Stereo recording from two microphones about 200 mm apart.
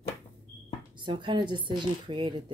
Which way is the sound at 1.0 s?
25° right (ahead or behind).